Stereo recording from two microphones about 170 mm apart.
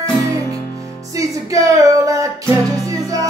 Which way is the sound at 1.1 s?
20° right (ahead or behind).